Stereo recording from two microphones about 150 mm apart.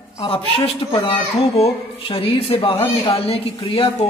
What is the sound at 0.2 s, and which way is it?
Speech, 35° left (ahead or behind).